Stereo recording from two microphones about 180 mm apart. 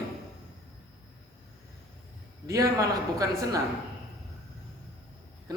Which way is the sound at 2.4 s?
20° right (ahead or behind).